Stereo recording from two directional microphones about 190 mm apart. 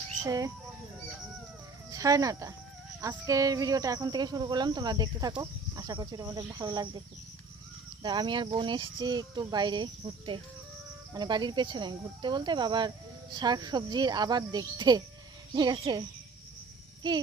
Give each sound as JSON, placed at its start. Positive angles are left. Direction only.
{"t": 0.3, "sound": "speech", "side_deg": -15}
{"t": 1.9, "sound": "speech", "side_deg": -20}
{"t": 8.0, "sound": "speech", "side_deg": -25}
{"t": 17.0, "sound": "speech", "side_deg": -25}